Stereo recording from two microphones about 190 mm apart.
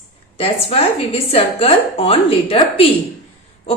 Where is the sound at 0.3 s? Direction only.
30° left (ahead or behind).